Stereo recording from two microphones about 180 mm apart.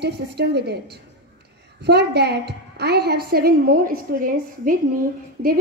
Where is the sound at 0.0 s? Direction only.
65° right (ahead or behind).